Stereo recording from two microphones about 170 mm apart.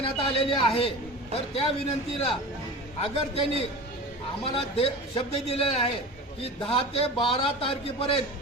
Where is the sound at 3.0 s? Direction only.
35° left (ahead or behind).